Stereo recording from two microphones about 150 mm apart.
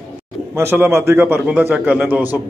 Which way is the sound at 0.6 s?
15° right (ahead or behind).